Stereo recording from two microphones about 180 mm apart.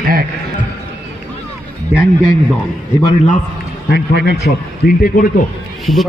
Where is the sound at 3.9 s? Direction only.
60° left (ahead or behind).